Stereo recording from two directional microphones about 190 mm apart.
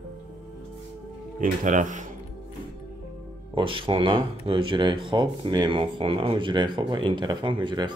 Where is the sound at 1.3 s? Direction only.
40° right (ahead or behind).